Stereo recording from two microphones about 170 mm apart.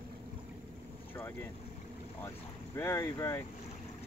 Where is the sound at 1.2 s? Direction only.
10° left (ahead or behind).